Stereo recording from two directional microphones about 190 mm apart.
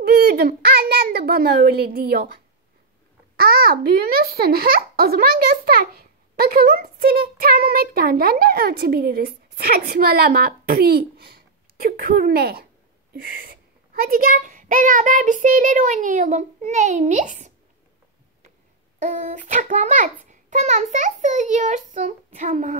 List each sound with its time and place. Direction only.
0.0 s a child's voice: 55° right (ahead or behind)
18.9 s a child's voice: 40° right (ahead or behind)